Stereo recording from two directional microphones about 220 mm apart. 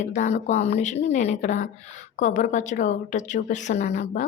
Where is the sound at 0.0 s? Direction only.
35° left (ahead or behind).